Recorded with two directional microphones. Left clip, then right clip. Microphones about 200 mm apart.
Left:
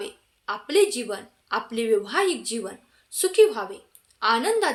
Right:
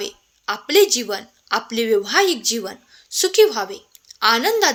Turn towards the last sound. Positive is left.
turn(degrees=-40)  # may be behind; listen again after turning